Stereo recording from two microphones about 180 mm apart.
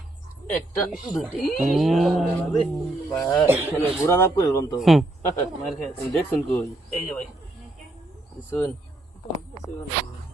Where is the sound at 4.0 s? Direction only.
20° left (ahead or behind).